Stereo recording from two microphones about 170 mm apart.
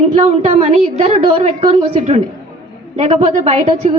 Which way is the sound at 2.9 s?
40° right (ahead or behind).